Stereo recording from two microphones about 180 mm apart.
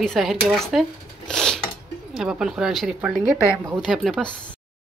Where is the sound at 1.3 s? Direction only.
5° left (ahead or behind).